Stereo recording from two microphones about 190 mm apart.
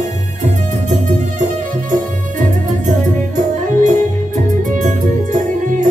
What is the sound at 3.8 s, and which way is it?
Music, 40° right (ahead or behind).